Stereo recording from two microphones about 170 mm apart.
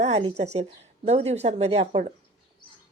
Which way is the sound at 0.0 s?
35° right (ahead or behind).